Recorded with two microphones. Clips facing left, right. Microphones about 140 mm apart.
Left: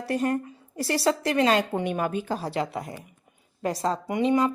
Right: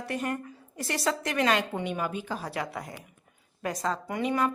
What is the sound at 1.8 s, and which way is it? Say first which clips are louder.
Speech: left 5 dB; 50° left (ahead or behind).